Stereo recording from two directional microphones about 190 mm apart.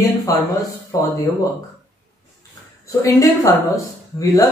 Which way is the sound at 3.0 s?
15° left (ahead or behind).